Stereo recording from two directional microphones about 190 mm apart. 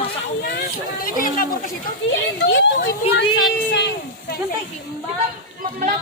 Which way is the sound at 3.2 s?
70° left (ahead or behind).